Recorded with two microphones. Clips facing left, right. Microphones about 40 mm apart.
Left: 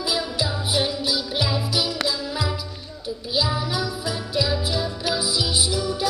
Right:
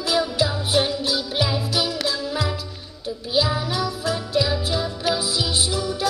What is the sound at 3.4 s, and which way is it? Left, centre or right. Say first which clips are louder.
Jingle bell: right 2 dB; right.